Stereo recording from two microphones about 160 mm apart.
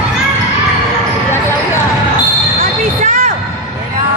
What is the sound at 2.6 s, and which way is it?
Basketball bounce, 50° right (ahead or behind).